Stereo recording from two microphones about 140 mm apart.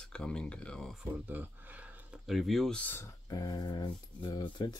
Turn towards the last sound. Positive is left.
turn(degrees=30)  # may be behind; listen again after turning